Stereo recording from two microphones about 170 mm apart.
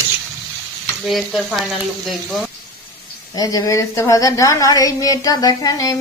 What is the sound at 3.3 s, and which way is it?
A woman's voice, 20° left (ahead or behind).